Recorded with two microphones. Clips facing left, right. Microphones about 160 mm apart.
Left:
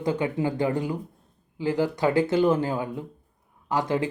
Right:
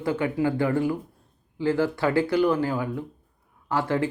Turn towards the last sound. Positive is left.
turn(degrees=15)  # may be behind; listen again after turning